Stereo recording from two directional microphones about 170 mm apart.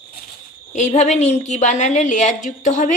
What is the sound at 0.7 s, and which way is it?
A woman's voice, 45° left (ahead or behind).